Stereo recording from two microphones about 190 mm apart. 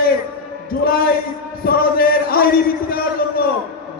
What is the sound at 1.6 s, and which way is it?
Speech, 50° left (ahead or behind).